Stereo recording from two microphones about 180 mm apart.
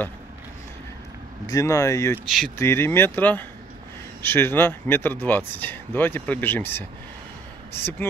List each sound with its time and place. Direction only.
1.5 s speech: 20° left (ahead or behind)
2.2 s speech: centre (ahead or behind)
2.6 s speech: 15° left (ahead or behind)